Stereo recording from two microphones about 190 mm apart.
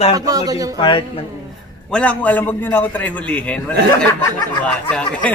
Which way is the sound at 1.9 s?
5° left (ahead or behind).